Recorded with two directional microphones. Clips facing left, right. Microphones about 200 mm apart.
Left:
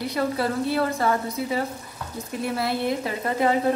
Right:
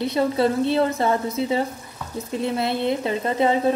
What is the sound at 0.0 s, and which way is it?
A woman's voice, 25° right (ahead or behind).